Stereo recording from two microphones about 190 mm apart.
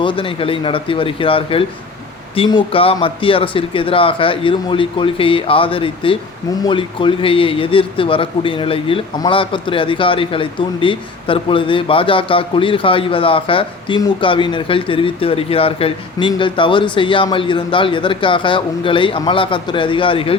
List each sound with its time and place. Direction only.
0.0 s a man's voice: 25° left (ahead or behind)